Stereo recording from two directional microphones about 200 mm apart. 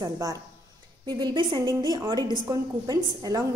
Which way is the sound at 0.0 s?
20° right (ahead or behind).